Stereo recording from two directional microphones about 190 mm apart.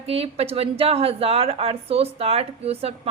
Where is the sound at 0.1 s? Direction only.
30° right (ahead or behind).